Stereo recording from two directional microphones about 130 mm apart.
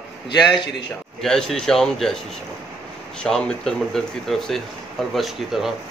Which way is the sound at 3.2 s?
5° left (ahead or behind).